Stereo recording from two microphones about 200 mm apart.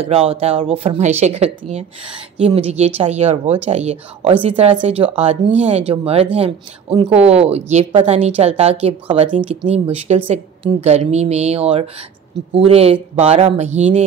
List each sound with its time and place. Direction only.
0.0 s a woman's voice: 30° right (ahead or behind)